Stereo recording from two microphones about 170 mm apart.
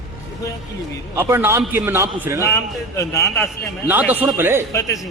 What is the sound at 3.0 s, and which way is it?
Speech, 15° left (ahead or behind).